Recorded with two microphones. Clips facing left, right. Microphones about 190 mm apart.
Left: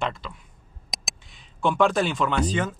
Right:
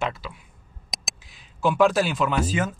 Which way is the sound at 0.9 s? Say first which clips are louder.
Even; centre (ahead or behind).